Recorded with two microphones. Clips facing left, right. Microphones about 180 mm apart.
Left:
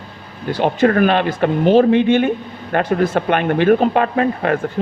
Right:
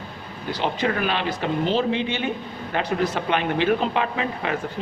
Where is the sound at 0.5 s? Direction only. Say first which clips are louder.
Left 9 dB; 50° left (ahead or behind).